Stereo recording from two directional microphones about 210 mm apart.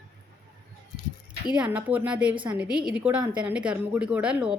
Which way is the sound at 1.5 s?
5° right (ahead or behind).